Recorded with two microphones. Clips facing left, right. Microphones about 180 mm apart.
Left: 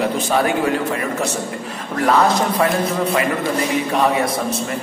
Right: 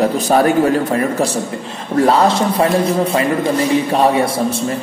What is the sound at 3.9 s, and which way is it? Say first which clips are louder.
Speech: right 4 dB; 30° right (ahead or behind).